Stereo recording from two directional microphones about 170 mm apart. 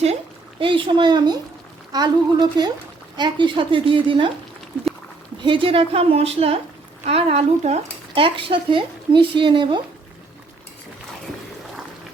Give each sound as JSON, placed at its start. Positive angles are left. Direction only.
{"t": 0.6, "sound": "a woman's voice", "side_deg": -30}
{"t": 5.4, "sound": "speech", "side_deg": -30}